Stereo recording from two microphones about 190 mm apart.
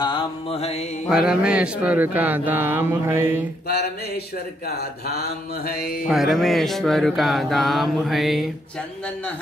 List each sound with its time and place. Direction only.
0.0 s mantra: 25° left (ahead or behind)
1.0 s speech: 5° right (ahead or behind)
4.6 s speech: 55° left (ahead or behind)
5.7 s music: 55° left (ahead or behind)
6.0 s mantra: centre (ahead or behind)